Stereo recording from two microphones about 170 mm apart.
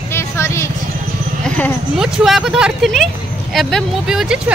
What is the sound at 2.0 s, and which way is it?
Speech, centre (ahead or behind).